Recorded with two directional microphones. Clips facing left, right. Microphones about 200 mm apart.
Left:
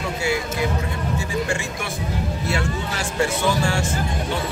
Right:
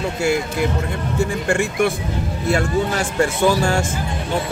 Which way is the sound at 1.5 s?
55° right (ahead or behind).